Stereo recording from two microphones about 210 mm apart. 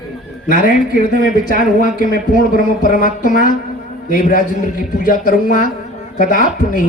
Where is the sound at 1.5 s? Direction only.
40° left (ahead or behind).